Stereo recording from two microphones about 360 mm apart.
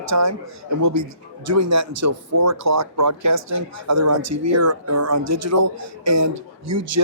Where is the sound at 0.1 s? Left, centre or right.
Right.